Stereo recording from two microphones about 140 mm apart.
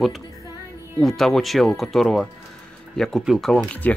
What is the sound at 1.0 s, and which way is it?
Speech, centre (ahead or behind).